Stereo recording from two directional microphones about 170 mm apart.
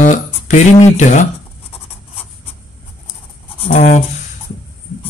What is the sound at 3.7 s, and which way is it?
Speech, 50° left (ahead or behind).